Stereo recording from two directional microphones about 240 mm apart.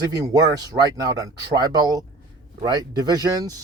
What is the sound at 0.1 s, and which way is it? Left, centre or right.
Speech, centre.